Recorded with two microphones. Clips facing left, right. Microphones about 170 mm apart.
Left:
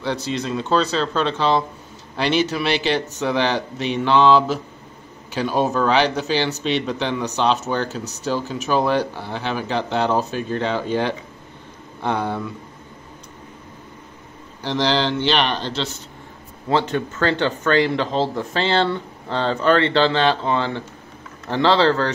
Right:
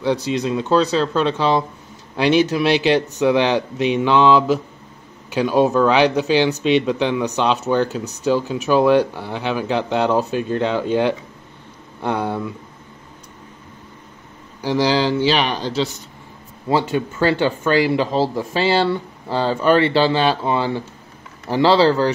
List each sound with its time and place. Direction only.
0.0 s speech: 15° right (ahead or behind)
14.6 s speech: 10° right (ahead or behind)